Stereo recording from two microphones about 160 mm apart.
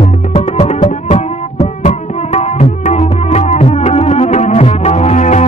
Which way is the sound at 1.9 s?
45° left (ahead or behind).